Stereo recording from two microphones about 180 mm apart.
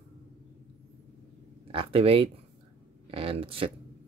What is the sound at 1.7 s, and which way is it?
Speech, 30° right (ahead or behind).